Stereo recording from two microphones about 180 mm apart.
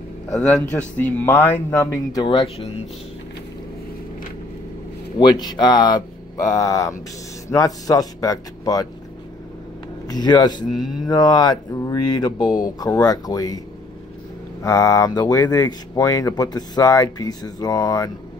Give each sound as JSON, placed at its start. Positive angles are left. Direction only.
{"t": 0.3, "sound": "speech", "side_deg": 5}
{"t": 2.2, "sound": "speech", "side_deg": 30}
{"t": 5.2, "sound": "speech", "side_deg": 25}
{"t": 10.0, "sound": "speech", "side_deg": 25}
{"t": 14.6, "sound": "speech", "side_deg": 15}